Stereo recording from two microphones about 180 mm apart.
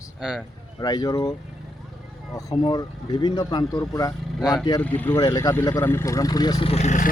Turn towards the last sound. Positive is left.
turn(degrees=45)  # may be behind; listen again after turning